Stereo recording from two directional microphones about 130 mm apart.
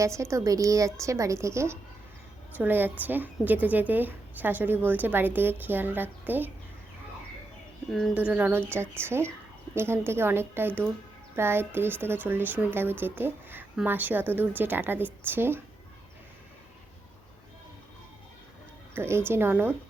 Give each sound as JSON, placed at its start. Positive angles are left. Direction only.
{"t": 0.0, "sound": "a woman's voice", "side_deg": -20}
{"t": 7.9, "sound": "speech", "side_deg": 0}
{"t": 8.1, "sound": "a woman's voice", "side_deg": -10}
{"t": 18.9, "sound": "a woman's voice", "side_deg": -20}